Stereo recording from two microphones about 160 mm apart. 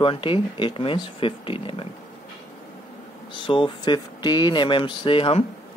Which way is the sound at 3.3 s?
30° left (ahead or behind).